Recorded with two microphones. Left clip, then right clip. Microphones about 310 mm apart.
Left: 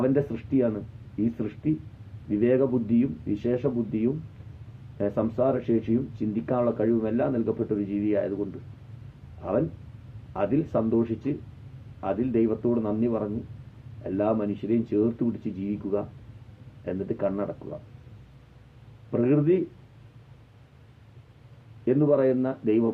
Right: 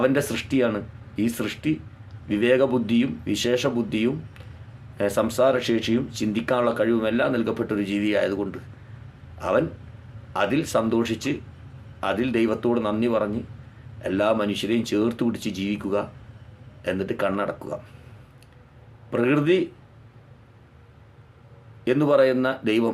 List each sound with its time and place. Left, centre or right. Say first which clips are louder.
0.0 s speech: right 4 dB; centre
10.3 s speech: right 3 dB; centre
19.1 s speech: right 2 dB; centre
21.8 s speech: right 3 dB; centre